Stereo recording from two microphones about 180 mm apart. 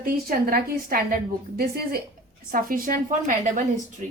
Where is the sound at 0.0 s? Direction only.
55° right (ahead or behind).